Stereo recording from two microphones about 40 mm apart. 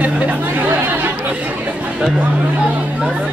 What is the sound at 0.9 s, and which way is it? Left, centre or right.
Chatter, right.